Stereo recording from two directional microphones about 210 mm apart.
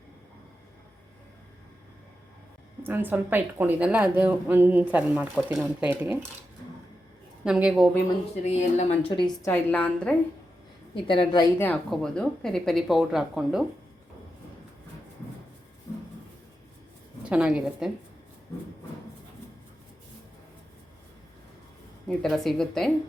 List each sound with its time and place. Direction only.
2.8 s speech: 10° right (ahead or behind)
7.4 s speech: 5° right (ahead or behind)
8.4 s a woman's voice: 30° left (ahead or behind); by 10.2 s 5° left (ahead or behind)
10.9 s a woman's voice: 25° left (ahead or behind)
11.6 s speech: 5° left (ahead or behind)
17.2 s speech: 5° right (ahead or behind)
22.0 s speech: centre (ahead or behind)